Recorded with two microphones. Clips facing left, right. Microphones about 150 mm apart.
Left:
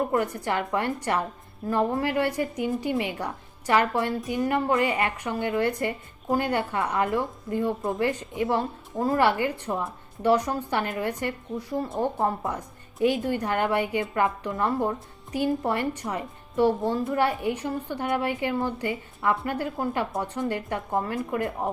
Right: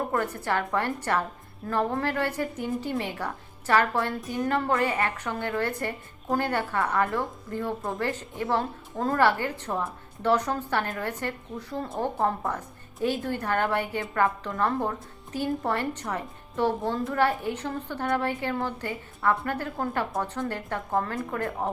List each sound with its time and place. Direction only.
0.1 s a woman's voice: 15° left (ahead or behind)